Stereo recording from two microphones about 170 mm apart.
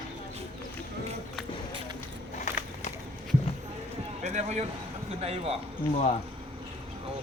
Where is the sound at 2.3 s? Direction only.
45° left (ahead or behind).